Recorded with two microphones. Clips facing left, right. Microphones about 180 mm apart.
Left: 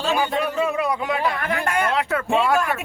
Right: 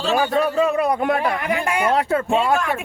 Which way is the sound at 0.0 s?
45° right (ahead or behind).